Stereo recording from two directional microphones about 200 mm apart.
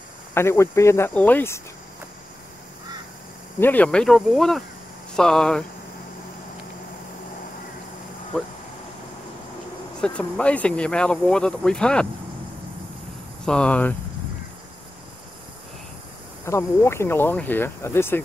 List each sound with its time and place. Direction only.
0.3 s speech: 15° left (ahead or behind)
3.5 s speech: 10° left (ahead or behind)
9.9 s speech: 5° left (ahead or behind)
13.5 s speech: 5° left (ahead or behind)
16.4 s speech: 15° left (ahead or behind)